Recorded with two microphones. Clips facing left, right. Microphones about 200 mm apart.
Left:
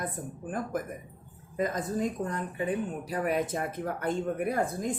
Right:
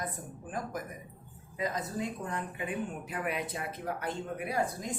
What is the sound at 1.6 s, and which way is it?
Speech, 50° left (ahead or behind).